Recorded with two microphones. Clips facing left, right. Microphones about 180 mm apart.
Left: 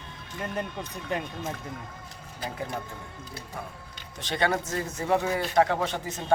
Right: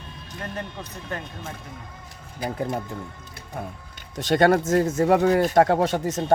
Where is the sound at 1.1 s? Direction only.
15° left (ahead or behind).